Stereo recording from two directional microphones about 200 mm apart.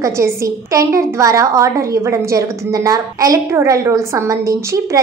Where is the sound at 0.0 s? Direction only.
15° right (ahead or behind).